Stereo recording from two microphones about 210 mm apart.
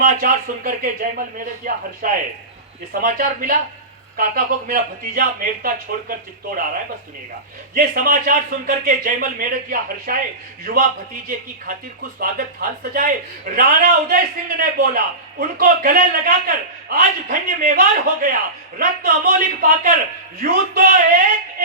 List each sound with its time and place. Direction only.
0.0 s a man's voice: 40° right (ahead or behind)
7.7 s a man's voice: 45° right (ahead or behind)